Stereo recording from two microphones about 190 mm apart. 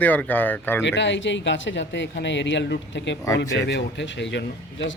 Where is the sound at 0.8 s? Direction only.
70° left (ahead or behind).